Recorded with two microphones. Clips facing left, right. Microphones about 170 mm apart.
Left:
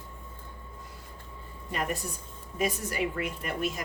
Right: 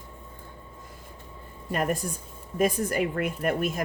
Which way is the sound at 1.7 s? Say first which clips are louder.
Right 5 dB; 50° right (ahead or behind).